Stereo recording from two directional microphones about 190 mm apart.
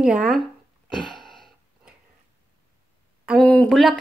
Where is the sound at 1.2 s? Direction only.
Centre (ahead or behind).